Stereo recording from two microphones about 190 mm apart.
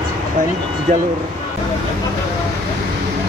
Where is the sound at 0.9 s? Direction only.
40° right (ahead or behind).